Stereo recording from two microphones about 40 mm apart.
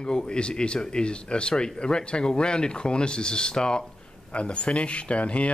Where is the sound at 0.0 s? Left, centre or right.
Left.